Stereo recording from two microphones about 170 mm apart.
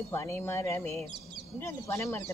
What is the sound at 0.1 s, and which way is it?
Speech, 15° left (ahead or behind).